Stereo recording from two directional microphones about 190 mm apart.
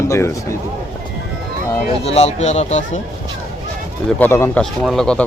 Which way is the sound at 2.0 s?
35° left (ahead or behind).